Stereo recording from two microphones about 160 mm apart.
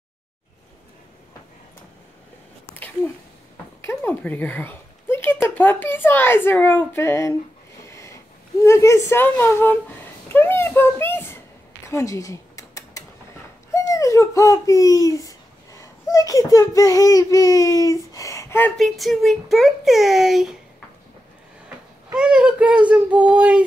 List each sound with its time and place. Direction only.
3.8 s speech: 10° left (ahead or behind)
5.1 s a sound: 15° left (ahead or behind)
5.5 s a woman's voice: 10° left (ahead or behind)
8.6 s speech: 20° left (ahead or behind)
11.9 s a sound: 20° left (ahead or behind)
13.7 s speech: 20° left (ahead or behind)
18.8 s a child's voice: centre (ahead or behind)
21.6 s child singing: 5° right (ahead or behind)